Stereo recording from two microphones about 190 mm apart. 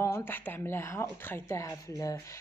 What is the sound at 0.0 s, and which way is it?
Speech, 10° left (ahead or behind).